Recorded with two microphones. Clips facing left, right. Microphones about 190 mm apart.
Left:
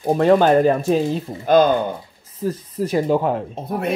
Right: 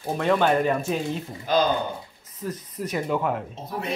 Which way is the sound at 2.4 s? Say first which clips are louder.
Left 8 dB; 30° left (ahead or behind).